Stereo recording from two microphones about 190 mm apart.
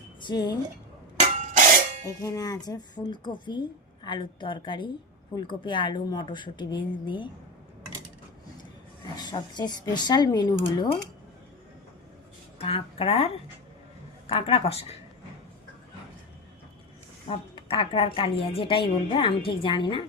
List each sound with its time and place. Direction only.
0.2 s speech: 20° left (ahead or behind)
1.2 s a sound: 40° right (ahead or behind)
2.0 s a woman's voice: 15° left (ahead or behind)
9.1 s a woman's voice: 20° left (ahead or behind)
12.5 s a woman's voice: 30° left (ahead or behind)
17.2 s a woman's voice: 30° left (ahead or behind)